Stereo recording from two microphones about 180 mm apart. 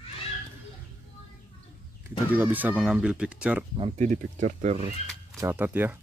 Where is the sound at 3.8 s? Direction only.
40° right (ahead or behind).